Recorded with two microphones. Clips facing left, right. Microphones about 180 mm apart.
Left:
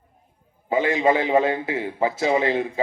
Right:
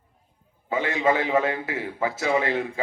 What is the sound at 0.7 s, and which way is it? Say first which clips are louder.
A man's voice: left 4 dB; 20° left (ahead or behind).